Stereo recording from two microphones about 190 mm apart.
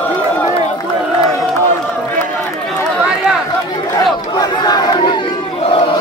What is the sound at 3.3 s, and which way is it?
Chatter, 5° right (ahead or behind).